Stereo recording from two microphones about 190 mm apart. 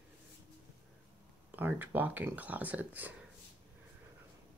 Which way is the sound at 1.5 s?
10° right (ahead or behind).